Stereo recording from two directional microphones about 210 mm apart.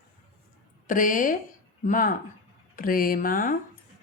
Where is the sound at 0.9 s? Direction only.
40° left (ahead or behind).